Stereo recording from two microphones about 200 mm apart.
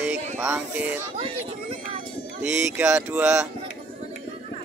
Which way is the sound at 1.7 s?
30° right (ahead or behind).